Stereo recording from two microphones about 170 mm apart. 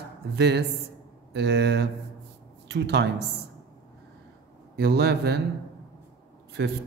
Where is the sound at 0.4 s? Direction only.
85° right.